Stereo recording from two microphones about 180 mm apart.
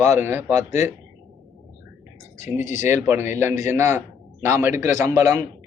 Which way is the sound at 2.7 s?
45° left (ahead or behind).